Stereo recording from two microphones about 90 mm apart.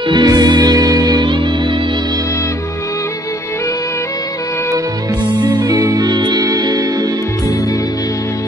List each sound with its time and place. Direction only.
0.1 s music: 50° right (ahead or behind)
5.4 s music: 45° right (ahead or behind)